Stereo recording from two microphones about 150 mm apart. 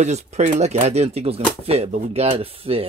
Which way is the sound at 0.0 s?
50° right (ahead or behind).